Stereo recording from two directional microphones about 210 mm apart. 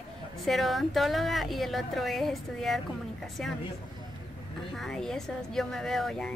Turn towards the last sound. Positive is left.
turn(degrees=0)  # may be behind; listen again after turning